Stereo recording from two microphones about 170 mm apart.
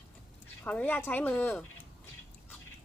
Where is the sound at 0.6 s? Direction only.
10° left (ahead or behind).